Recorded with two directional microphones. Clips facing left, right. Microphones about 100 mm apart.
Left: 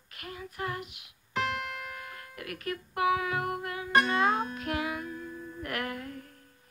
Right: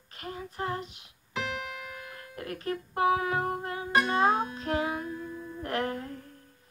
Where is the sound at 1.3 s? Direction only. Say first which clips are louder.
Left 2 dB; 5° right (ahead or behind).